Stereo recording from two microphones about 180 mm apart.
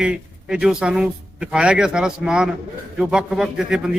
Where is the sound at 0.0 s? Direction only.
5° right (ahead or behind).